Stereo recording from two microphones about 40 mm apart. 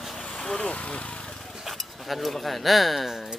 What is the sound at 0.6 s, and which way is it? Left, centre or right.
Speech, left.